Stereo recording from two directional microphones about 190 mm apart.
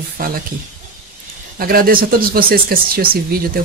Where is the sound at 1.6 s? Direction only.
50° right (ahead or behind).